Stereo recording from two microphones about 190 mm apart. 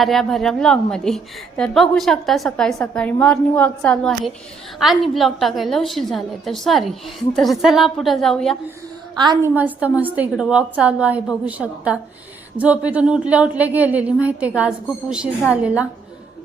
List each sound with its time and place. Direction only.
0.0 s a woman's voice: centre (ahead or behind)
9.1 s a woman's voice: 20° right (ahead or behind)
9.6 s a woman's voice: 10° right (ahead or behind)